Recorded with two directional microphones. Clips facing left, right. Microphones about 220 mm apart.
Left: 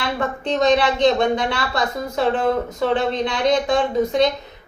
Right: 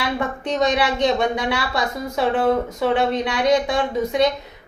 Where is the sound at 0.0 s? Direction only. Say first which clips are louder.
Even; 10° right (ahead or behind).